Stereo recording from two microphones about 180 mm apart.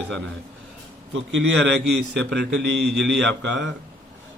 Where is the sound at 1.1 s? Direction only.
85° right.